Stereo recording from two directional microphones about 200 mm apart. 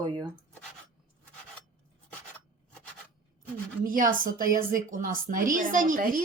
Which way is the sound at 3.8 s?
45° right (ahead or behind).